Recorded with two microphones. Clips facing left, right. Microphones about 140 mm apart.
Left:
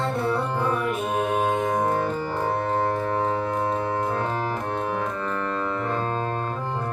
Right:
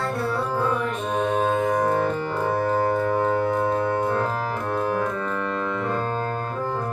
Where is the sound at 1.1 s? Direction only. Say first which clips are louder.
Right 3 dB; 10° left (ahead or behind).